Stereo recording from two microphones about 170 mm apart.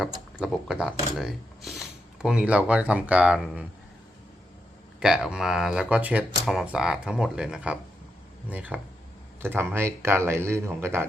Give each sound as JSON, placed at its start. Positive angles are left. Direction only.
{"t": 0.3, "sound": "speech", "side_deg": 0}
{"t": 4.9, "sound": "speech", "side_deg": -5}